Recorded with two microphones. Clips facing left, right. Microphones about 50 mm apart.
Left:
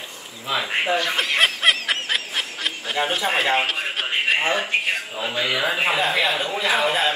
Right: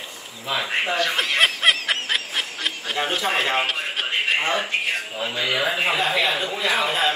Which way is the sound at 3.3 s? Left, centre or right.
Centre.